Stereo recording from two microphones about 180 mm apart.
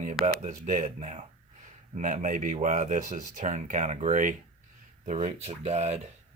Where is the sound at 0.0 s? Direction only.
45° right (ahead or behind).